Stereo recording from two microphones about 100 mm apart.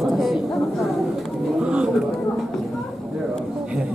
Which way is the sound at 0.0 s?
Centre (ahead or behind).